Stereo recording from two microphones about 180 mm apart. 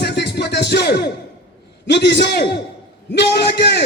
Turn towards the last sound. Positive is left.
turn(degrees=70)  # may be behind; listen again after turning